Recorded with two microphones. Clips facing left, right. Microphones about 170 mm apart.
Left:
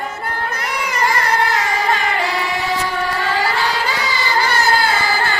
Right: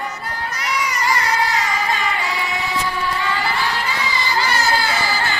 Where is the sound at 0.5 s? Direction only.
55° left (ahead or behind).